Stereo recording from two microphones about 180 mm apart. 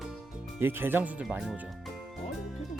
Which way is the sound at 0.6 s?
10° right (ahead or behind).